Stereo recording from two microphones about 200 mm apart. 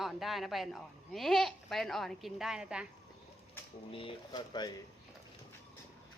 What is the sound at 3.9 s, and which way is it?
Speech, 25° left (ahead or behind).